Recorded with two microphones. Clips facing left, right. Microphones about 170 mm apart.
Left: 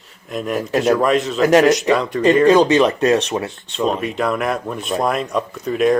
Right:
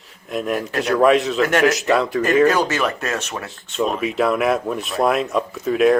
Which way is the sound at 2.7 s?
30° left (ahead or behind).